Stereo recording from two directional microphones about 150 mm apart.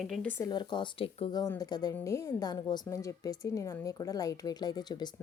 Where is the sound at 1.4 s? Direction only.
25° left (ahead or behind).